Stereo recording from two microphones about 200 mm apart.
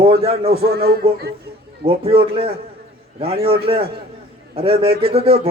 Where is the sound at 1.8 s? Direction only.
30° right (ahead or behind).